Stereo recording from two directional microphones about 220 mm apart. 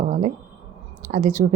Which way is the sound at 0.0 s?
35° right (ahead or behind).